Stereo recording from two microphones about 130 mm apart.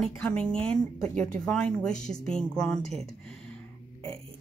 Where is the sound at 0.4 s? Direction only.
5° left (ahead or behind).